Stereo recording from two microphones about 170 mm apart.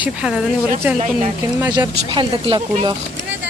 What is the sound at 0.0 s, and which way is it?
Speech, 5° right (ahead or behind).